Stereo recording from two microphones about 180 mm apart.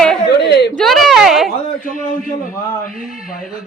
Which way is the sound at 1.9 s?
45° left (ahead or behind).